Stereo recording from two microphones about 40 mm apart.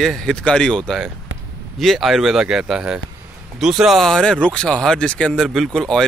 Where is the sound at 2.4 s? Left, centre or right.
Centre.